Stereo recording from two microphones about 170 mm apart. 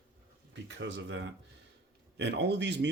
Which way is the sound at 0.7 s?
90° right.